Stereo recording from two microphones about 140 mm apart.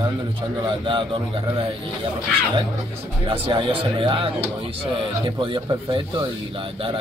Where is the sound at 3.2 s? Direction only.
35° right (ahead or behind).